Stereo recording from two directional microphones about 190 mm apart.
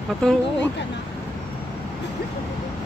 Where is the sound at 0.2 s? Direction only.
5° left (ahead or behind).